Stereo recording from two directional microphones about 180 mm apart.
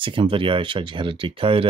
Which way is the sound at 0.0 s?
30° right (ahead or behind).